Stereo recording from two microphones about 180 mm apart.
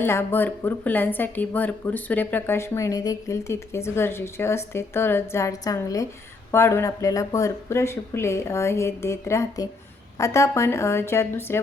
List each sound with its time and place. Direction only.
0.0 s a woman's voice: 15° left (ahead or behind)